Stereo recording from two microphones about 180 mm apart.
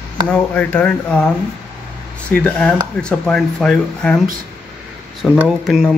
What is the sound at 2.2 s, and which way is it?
Speech, 5° left (ahead or behind).